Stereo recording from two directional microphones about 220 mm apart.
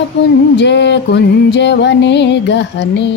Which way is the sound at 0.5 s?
55° left (ahead or behind).